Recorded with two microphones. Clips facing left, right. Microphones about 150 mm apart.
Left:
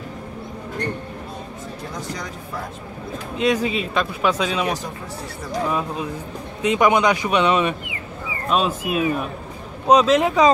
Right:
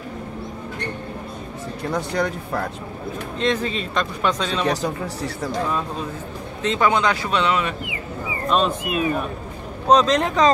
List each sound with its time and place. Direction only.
1.9 s speech: 65° right (ahead or behind)
3.3 s speech: 10° left (ahead or behind)
8.5 s speech: 5° left (ahead or behind)